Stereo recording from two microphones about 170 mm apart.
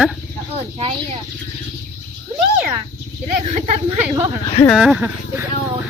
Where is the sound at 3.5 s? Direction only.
40° right (ahead or behind).